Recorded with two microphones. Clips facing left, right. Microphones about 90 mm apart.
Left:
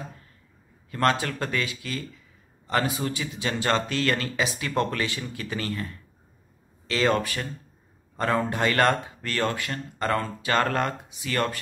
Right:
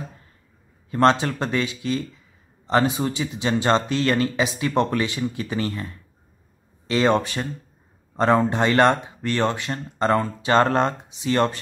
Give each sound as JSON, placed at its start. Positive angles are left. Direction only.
{"t": 0.8, "sound": "speech", "side_deg": -25}